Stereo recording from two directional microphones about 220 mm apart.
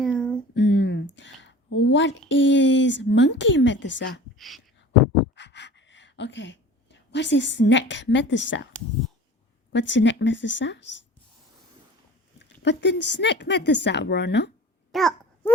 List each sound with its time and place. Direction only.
0.0 s a sound: 5° left (ahead or behind)
0.5 s a sound: 55° left (ahead or behind)
1.1 s speech: 55° left (ahead or behind)
4.4 s a sound: centre (ahead or behind)
5.3 s pant: 50° left (ahead or behind)
7.1 s a woman's voice: 55° left (ahead or behind)
9.7 s a woman's voice: 55° left (ahead or behind)
12.6 s speech: 55° left (ahead or behind)
14.9 s babbling: centre (ahead or behind)